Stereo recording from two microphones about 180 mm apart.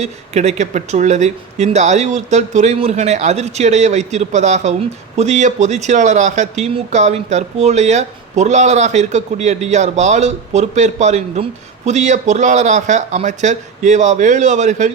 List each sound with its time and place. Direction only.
0.0 s speech: 40° right (ahead or behind)